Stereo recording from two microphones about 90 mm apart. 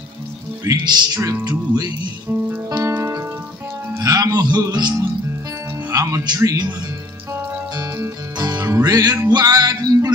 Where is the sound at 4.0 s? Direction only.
40° right (ahead or behind).